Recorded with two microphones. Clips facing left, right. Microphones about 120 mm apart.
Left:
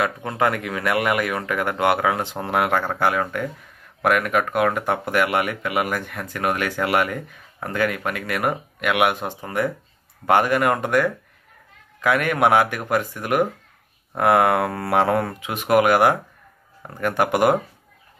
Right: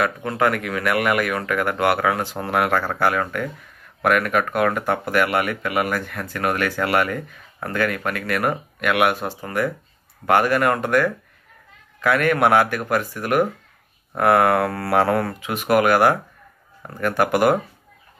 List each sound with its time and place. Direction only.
0.0 s speech: 20° left (ahead or behind)